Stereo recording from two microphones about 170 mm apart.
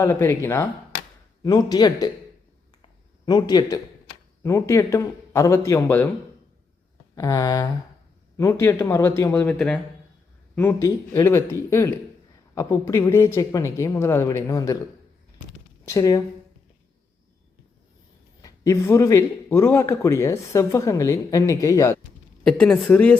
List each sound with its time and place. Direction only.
0.0 s a man's voice: 15° left (ahead or behind)
3.2 s a man's voice: 25° left (ahead or behind)
7.2 s a man's voice: 20° left (ahead or behind)
15.9 s a man's voice: 20° left (ahead or behind)
18.4 s a man's voice: 20° left (ahead or behind)
22.4 s a man's voice: 5° left (ahead or behind)